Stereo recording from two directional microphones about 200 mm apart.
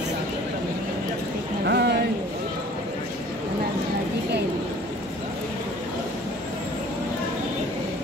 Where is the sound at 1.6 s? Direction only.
55° right (ahead or behind).